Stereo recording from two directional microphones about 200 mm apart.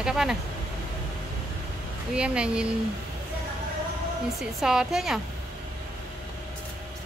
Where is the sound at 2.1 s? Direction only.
5° right (ahead or behind).